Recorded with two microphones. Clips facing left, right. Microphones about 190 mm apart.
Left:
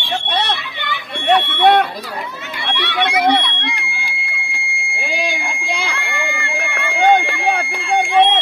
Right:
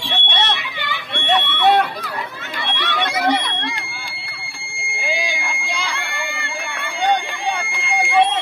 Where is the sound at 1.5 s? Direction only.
60° left (ahead or behind).